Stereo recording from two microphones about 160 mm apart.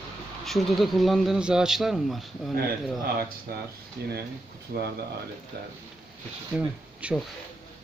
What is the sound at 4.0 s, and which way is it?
Speech, 85° right.